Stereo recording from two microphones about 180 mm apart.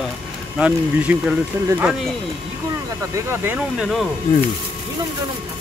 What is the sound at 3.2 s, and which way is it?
Speech, 10° right (ahead or behind).